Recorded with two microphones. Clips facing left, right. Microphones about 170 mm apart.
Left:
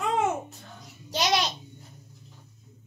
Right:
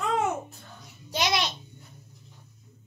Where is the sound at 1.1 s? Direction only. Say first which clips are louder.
Left 1 dB; 35° left (ahead or behind).